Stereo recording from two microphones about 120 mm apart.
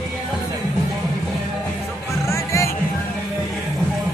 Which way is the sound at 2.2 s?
25° left (ahead or behind).